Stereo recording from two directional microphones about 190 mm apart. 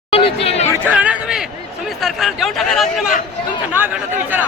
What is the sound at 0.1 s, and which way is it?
Chatter, 30° left (ahead or behind).